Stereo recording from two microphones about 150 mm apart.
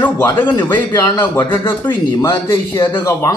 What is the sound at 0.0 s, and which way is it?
Speech, 15° left (ahead or behind).